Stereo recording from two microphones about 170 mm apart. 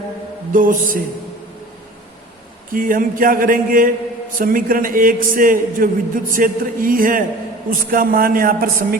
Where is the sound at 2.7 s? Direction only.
55° right (ahead or behind).